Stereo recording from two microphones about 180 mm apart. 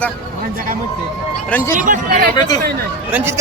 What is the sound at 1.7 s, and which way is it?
Speech, 50° right (ahead or behind).